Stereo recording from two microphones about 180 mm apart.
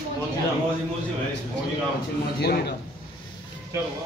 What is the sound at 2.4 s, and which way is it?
Speech, 60° left (ahead or behind).